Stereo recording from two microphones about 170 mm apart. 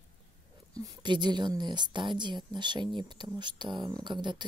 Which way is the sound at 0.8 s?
25° right (ahead or behind).